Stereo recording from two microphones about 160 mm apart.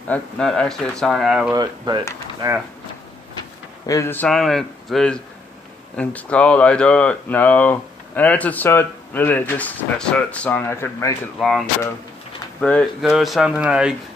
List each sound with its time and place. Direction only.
0.1 s speech: 5° left (ahead or behind)
1.5 s speech: 25° right (ahead or behind)
3.8 s speech: 20° left (ahead or behind)
11.3 s speech: centre (ahead or behind)